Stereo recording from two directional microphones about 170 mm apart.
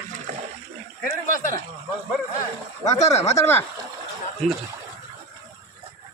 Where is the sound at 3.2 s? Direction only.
15° left (ahead or behind).